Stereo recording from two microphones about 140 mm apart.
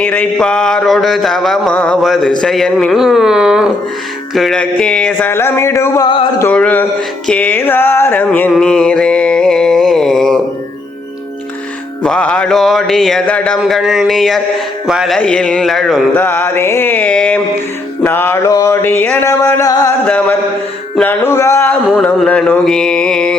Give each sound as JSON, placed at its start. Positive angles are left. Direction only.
{"t": 0.0, "sound": "a sound", "side_deg": 10}
{"t": 4.6, "sound": "music", "side_deg": 5}
{"t": 5.3, "sound": "music", "side_deg": 20}
{"t": 6.4, "sound": "music", "side_deg": 10}
{"t": 7.3, "sound": "mantra", "side_deg": 10}
{"t": 12.0, "sound": "a sound", "side_deg": 5}
{"t": 16.1, "sound": "music", "side_deg": 15}
{"t": 20.1, "sound": "music", "side_deg": 10}
{"t": 21.8, "sound": "a sound", "side_deg": 5}